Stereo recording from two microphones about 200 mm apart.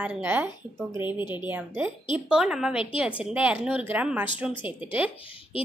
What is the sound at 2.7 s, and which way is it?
Speech, 25° left (ahead or behind).